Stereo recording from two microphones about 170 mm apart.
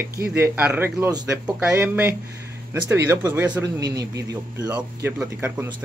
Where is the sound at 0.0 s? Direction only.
15° right (ahead or behind).